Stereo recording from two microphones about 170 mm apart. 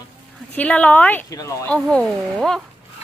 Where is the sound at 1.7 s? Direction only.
5° left (ahead or behind).